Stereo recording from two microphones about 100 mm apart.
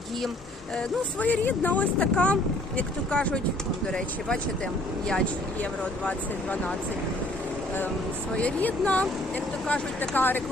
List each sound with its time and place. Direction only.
0.8 s speech: 15° left (ahead or behind)
5.8 s speech: 15° left (ahead or behind)
8.4 s speech: 15° left (ahead or behind)